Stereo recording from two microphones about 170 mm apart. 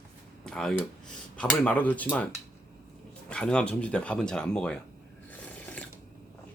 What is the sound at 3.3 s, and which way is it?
Speech, 5° left (ahead or behind).